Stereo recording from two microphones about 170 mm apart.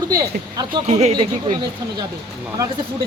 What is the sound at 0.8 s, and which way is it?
Speech, 40° right (ahead or behind).